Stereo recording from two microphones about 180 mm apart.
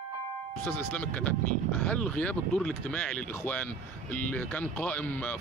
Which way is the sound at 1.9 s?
5° left (ahead or behind).